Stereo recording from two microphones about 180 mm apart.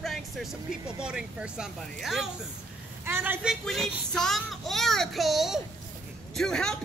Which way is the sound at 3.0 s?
10° right (ahead or behind).